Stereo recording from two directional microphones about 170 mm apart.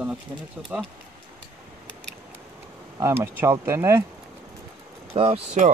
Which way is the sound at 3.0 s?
15° right (ahead or behind).